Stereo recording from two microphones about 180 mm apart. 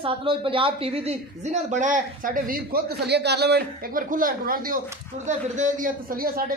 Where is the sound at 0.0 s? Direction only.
30° right (ahead or behind).